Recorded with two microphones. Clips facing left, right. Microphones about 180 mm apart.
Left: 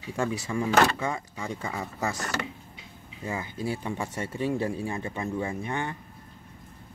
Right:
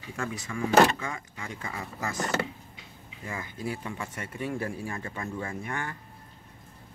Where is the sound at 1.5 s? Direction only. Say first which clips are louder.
Left 3 dB; 30° left (ahead or behind).